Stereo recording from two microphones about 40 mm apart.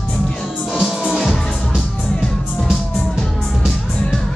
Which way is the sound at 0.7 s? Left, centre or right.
Centre.